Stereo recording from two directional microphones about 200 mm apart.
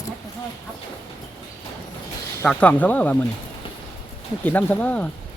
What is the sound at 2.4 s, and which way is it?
Speech, 5° left (ahead or behind).